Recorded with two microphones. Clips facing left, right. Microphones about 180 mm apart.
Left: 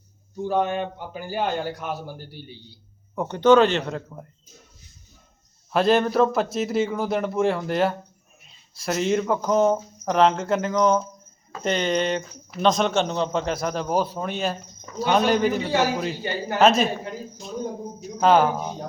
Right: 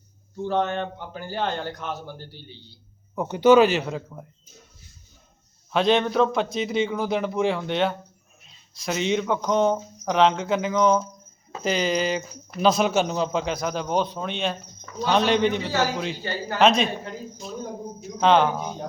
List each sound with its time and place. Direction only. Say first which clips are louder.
0.3 s a man's voice: left 1 dB; 10° left (ahead or behind)
3.2 s speech: even; 5° right (ahead or behind)
5.7 s a man's voice: left 1 dB; 5° left (ahead or behind)
16.6 s speech: left 1 dB; 5° left (ahead or behind)
18.2 s speech: left 1 dB; 5° left (ahead or behind)